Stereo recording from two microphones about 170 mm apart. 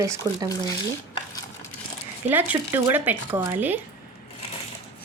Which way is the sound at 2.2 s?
10° right (ahead or behind).